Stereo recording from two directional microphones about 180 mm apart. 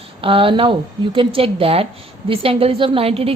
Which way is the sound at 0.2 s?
30° right (ahead or behind).